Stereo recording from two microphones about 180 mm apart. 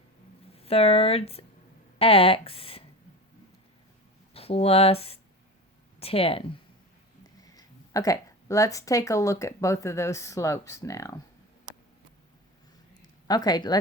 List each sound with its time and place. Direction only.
0.5 s speech: 35° left (ahead or behind)
4.4 s speech: 35° left (ahead or behind)
7.4 s speech: 20° left (ahead or behind)
13.0 s a sound: 20° left (ahead or behind)